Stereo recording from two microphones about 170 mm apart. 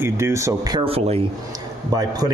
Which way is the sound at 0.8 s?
35° right (ahead or behind).